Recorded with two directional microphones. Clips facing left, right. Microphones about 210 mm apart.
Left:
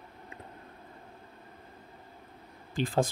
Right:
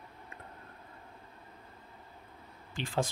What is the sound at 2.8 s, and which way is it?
Speech, 40° left (ahead or behind).